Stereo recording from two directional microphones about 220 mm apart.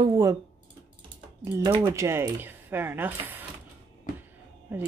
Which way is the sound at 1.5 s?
15° right (ahead or behind).